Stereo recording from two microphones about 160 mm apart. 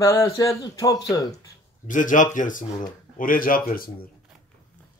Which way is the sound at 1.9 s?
55° left (ahead or behind).